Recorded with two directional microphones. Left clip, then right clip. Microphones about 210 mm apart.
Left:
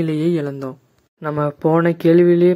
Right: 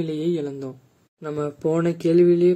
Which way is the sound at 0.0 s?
25° left (ahead or behind).